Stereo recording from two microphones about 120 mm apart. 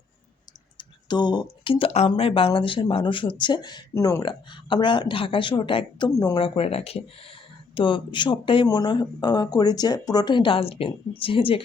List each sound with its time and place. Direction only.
0.8 s speech: 40° left (ahead or behind)
3.9 s speech: 25° left (ahead or behind)
4.2 s speech: 40° left (ahead or behind)
6.1 s speech: 30° left (ahead or behind)
6.3 s speech: 50° left (ahead or behind)
7.8 s speech: 45° left (ahead or behind)